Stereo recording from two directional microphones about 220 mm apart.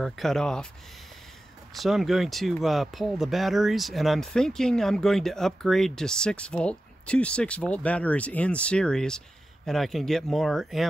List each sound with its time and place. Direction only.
0.0 s speech: centre (ahead or behind)
1.7 s speech: centre (ahead or behind)